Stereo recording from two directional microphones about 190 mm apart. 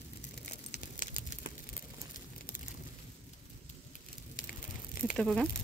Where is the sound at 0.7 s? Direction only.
45° left (ahead or behind).